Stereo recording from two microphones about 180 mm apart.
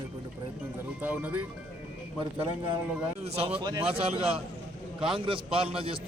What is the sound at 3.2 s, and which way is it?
A man's voice, 35° right (ahead or behind).